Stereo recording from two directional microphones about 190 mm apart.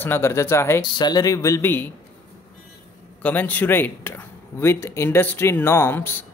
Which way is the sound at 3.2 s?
10° left (ahead or behind).